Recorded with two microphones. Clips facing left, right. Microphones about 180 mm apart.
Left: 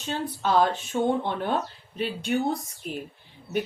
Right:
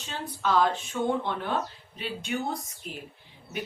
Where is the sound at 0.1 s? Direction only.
35° left (ahead or behind).